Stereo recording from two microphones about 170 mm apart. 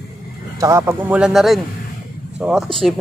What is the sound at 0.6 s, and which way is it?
Speech, 15° right (ahead or behind).